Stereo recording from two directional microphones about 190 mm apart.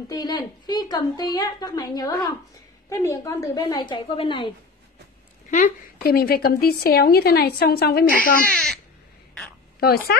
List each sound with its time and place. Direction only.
0.1 s a woman's voice: 20° left (ahead or behind)
5.5 s a woman's voice: 50° left (ahead or behind)
9.8 s speech: 55° left (ahead or behind)